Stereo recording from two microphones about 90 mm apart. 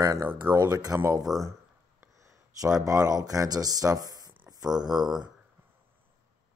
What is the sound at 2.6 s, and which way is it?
Speech, 40° right (ahead or behind).